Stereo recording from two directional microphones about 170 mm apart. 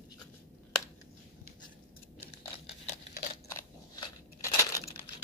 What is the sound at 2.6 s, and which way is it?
Crumpling, 35° left (ahead or behind).